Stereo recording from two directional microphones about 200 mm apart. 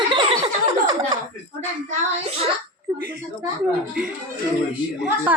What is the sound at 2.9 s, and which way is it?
Speech, 20° right (ahead or behind).